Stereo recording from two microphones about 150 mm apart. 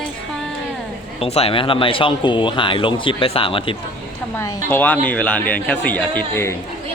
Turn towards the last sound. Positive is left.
turn(degrees=15)  # may be behind; listen again after turning